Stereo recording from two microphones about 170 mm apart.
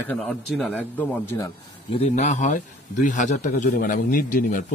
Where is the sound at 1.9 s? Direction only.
40° left (ahead or behind).